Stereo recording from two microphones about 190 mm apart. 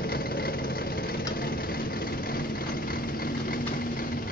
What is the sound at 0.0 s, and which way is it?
Vehicle, 50° left (ahead or behind).